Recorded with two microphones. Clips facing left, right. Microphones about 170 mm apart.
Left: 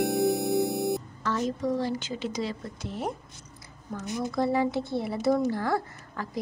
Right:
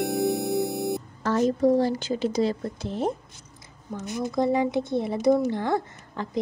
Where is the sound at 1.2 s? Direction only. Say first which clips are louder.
Right 8 dB; 40° right (ahead or behind).